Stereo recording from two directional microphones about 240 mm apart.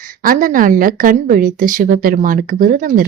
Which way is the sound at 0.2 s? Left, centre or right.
Right.